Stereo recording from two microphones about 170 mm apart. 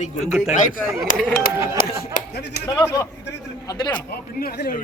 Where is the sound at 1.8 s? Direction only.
65° left (ahead or behind).